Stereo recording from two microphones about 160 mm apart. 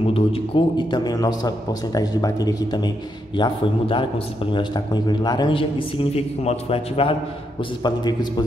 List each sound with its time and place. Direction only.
0.0 s a man's voice: 35° left (ahead or behind)
7.8 s a man's voice: 25° left (ahead or behind)